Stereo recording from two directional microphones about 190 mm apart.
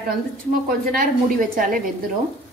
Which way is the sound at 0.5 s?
50° right (ahead or behind).